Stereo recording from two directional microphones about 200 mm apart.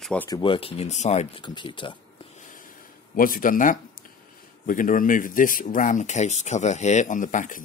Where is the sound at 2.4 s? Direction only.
40° left (ahead or behind).